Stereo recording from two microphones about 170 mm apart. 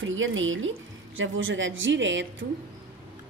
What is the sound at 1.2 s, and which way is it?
A woman's voice, 90° right.